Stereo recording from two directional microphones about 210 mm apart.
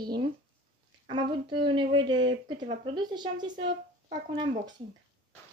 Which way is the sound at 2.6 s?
35° right (ahead or behind).